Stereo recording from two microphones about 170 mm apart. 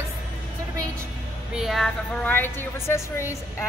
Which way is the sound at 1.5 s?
Centre (ahead or behind).